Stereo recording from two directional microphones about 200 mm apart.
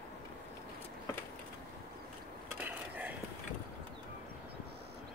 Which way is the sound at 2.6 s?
10° right (ahead or behind).